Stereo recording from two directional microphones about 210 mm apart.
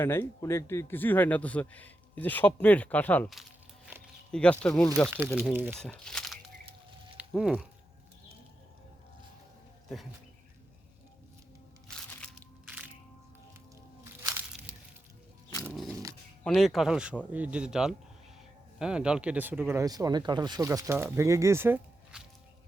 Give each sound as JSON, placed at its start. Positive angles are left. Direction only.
{"t": 0.0, "sound": "speech", "side_deg": 10}
{"t": 5.5, "sound": "speech", "side_deg": -10}
{"t": 5.8, "sound": "speech", "side_deg": 5}
{"t": 11.9, "sound": "crushing", "side_deg": 0}
{"t": 14.0, "sound": "a sound", "side_deg": -15}
{"t": 15.4, "sound": "dog", "side_deg": 15}
{"t": 15.7, "sound": "dog", "side_deg": 0}
{"t": 16.4, "sound": "speech", "side_deg": 5}